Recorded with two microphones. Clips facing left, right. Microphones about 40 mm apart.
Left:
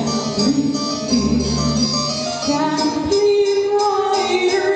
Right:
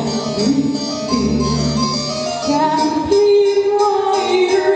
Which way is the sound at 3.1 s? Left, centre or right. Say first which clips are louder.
Right 3 dB; right.